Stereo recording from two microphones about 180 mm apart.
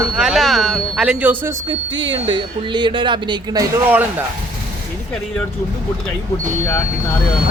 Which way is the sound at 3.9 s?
10° right (ahead or behind).